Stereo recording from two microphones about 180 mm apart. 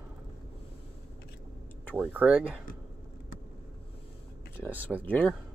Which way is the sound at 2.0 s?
10° right (ahead or behind).